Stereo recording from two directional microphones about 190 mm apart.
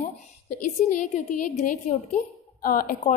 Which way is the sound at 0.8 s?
40° left (ahead or behind).